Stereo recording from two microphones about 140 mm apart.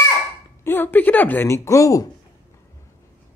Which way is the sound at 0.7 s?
15° left (ahead or behind).